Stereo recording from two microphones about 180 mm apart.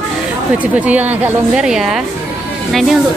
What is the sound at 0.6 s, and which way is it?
A woman's voice, 10° right (ahead or behind).